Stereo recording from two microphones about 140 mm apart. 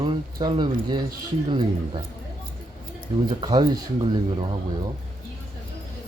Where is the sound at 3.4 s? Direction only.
30° right (ahead or behind).